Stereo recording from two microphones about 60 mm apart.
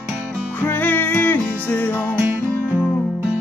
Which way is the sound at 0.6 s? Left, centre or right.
Left.